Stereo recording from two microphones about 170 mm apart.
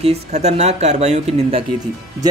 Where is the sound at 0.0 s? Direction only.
40° right (ahead or behind).